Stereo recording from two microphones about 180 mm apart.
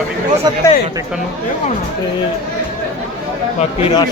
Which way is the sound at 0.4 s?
20° right (ahead or behind).